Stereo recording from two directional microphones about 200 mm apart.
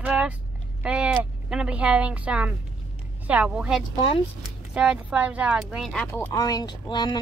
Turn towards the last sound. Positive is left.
turn(degrees=20)  # may be behind; listen again after turning